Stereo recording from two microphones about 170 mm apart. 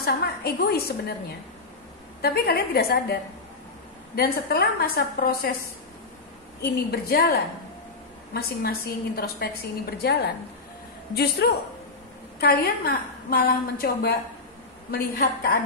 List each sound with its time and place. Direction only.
0.0 s a woman's voice: 70° left (ahead or behind)
2.2 s a woman's voice: 65° left (ahead or behind)
6.6 s a woman's voice: 65° left (ahead or behind)